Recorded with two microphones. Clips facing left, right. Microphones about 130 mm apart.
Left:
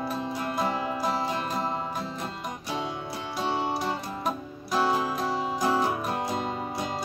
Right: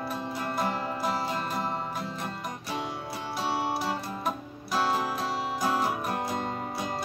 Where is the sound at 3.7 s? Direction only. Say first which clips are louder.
Left 1 dB; 5° right (ahead or behind).